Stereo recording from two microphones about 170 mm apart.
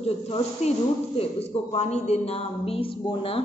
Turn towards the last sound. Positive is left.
turn(degrees=35)  # may be behind; listen again after turning